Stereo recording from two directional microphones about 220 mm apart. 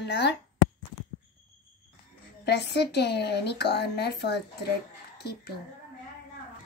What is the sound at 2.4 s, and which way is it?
A woman's voice, 50° left (ahead or behind).